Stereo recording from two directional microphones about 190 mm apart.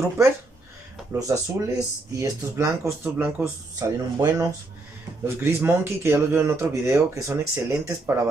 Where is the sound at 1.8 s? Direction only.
15° right (ahead or behind).